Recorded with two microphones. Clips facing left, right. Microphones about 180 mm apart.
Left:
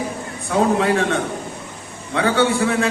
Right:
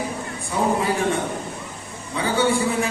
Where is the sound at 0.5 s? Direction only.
75° left (ahead or behind).